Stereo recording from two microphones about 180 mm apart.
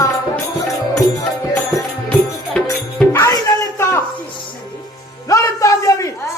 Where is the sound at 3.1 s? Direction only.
15° left (ahead or behind).